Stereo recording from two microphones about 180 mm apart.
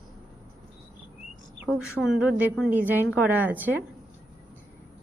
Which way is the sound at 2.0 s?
5° right (ahead or behind).